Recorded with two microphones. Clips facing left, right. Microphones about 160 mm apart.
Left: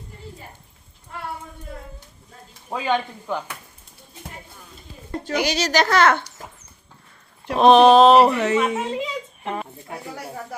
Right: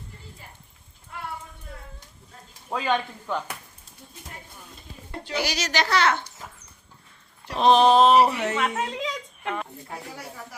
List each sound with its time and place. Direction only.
2.6 s speech: 10° left (ahead or behind)
5.3 s a woman's voice: 20° left (ahead or behind)
5.5 s speech: 35° left (ahead or behind)
5.8 s speech: 50° left (ahead or behind)
7.4 s speech: 55° left (ahead or behind); by 8.5 s 80° left
8.5 s speech: 10° left (ahead or behind)